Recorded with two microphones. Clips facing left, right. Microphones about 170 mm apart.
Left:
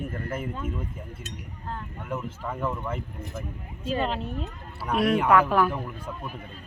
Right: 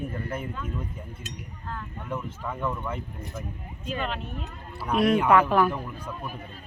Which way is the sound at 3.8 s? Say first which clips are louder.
Left 4 dB; 30° left (ahead or behind).